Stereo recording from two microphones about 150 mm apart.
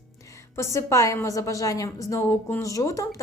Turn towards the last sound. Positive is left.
turn(degrees=20)  # may be behind; listen again after turning